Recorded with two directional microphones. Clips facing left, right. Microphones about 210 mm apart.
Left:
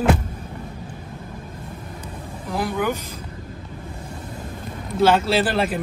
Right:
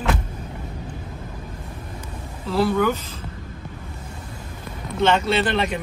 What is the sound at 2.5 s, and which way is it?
Speech, 15° left (ahead or behind).